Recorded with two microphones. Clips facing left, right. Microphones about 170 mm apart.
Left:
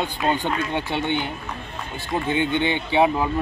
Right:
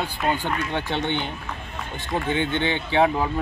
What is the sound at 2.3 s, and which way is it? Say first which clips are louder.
Speech: left 2 dB; 15° left (ahead or behind).